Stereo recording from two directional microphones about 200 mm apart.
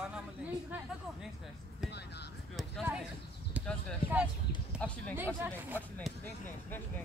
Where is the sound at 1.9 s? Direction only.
55° left (ahead or behind).